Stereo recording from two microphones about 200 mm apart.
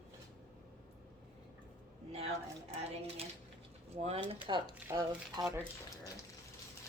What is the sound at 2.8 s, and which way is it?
Speech, 30° right (ahead or behind).